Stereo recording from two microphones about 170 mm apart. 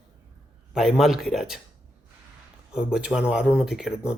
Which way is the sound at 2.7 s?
5° right (ahead or behind).